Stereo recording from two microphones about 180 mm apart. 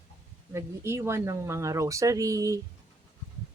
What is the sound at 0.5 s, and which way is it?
Speech, 15° right (ahead or behind).